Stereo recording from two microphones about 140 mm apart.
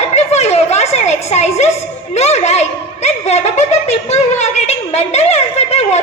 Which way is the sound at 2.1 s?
50° left (ahead or behind).